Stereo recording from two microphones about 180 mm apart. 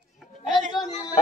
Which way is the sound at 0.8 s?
25° left (ahead or behind).